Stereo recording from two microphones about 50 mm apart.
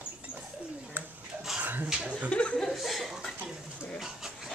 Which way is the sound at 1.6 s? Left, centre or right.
Right.